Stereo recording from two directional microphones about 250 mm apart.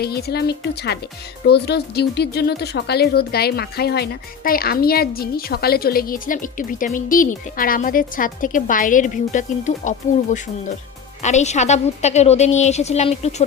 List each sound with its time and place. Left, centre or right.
0.0 s a woman's voice: left